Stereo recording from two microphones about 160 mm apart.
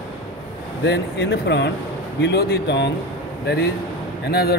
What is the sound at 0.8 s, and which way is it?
Speech, 90° left.